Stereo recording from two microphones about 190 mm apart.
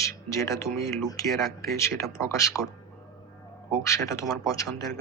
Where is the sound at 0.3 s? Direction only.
15° left (ahead or behind).